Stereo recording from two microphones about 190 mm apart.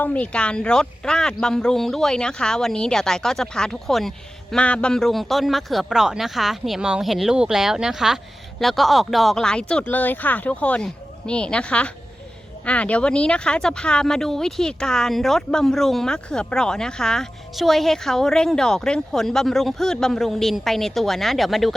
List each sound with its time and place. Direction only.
0.0 s speech: 5° left (ahead or behind)